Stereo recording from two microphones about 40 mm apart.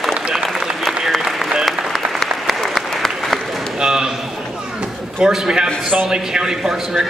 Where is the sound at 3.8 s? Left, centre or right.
Centre.